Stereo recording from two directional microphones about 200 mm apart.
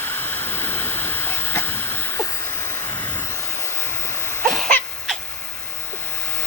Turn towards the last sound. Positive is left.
turn(degrees=5)  # may be behind; listen again after turning